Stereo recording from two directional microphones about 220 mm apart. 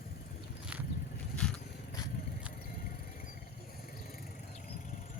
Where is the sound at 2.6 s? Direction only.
45° left (ahead or behind).